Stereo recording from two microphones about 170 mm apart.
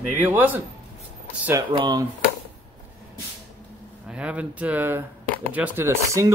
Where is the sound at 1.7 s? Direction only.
25° right (ahead or behind).